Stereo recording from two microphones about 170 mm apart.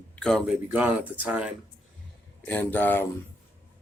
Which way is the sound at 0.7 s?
10° right (ahead or behind).